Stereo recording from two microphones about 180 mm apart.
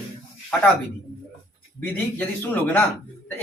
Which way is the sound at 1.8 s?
10° left (ahead or behind).